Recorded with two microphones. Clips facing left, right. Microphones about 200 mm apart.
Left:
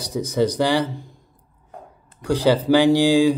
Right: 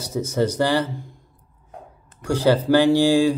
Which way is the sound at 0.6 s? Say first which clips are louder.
Right 1 dB; 15° left (ahead or behind).